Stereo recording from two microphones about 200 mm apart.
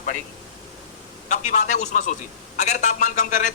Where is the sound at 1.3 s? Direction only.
35° left (ahead or behind).